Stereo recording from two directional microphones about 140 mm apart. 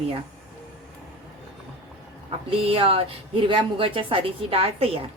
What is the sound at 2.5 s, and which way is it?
A woman's voice, 40° right (ahead or behind).